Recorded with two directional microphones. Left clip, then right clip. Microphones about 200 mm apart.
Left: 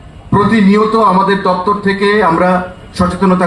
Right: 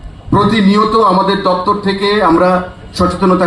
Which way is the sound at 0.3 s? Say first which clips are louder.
Even; 25° right (ahead or behind).